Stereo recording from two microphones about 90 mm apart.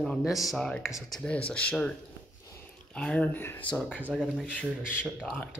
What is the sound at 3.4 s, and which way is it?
Speech, 25° left (ahead or behind).